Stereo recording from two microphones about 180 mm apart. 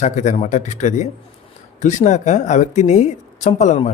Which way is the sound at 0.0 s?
45° left (ahead or behind).